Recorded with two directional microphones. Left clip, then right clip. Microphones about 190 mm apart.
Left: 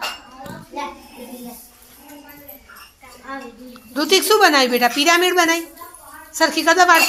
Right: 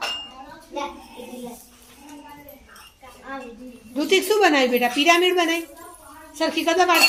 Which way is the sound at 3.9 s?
5° left (ahead or behind).